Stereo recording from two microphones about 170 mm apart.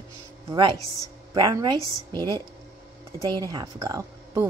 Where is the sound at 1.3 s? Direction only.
20° right (ahead or behind).